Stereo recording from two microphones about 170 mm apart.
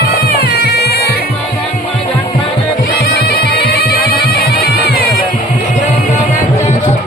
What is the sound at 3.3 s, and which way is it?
Bagpipes, 70° left (ahead or behind).